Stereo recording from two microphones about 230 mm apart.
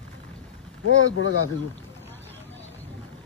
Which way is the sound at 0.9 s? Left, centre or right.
Left.